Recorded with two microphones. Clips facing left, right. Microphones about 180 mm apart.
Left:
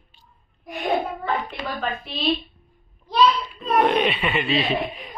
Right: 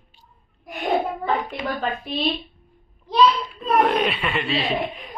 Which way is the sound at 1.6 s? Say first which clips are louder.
Right 3 dB; 20° right (ahead or behind).